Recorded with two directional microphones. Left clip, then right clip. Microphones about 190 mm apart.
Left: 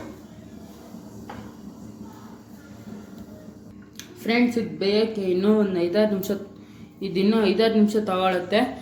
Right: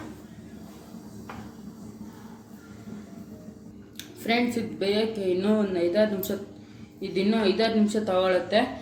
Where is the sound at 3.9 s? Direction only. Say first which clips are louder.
Left 3 dB; 50° left (ahead or behind).